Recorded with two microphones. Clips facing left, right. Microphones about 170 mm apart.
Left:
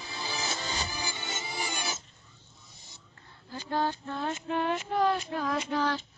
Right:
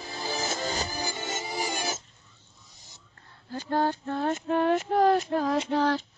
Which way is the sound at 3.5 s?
50° right (ahead or behind).